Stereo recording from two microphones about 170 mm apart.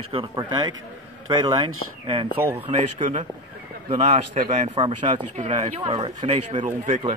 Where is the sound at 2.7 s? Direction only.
40° right (ahead or behind).